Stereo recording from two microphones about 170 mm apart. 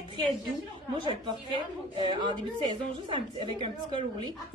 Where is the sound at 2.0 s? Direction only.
25° right (ahead or behind).